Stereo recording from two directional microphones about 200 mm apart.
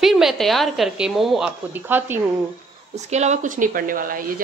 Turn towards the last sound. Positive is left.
turn(degrees=-45)  # may be behind; listen again after turning